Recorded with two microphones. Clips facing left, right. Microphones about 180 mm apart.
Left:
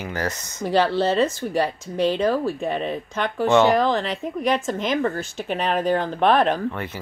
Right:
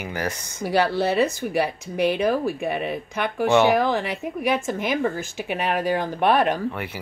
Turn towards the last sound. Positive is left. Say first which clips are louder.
# left 1 dB
turn(degrees=-10)  # may be behind; listen again after turning